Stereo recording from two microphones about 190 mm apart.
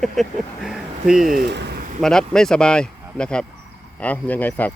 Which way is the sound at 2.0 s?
5° left (ahead or behind).